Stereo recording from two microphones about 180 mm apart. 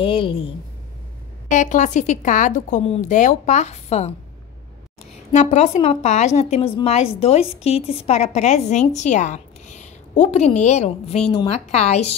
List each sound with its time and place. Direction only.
0.0 s a woman's voice: 30° left (ahead or behind)
1.5 s speech: 45° left (ahead or behind)
5.3 s speech: 40° left (ahead or behind)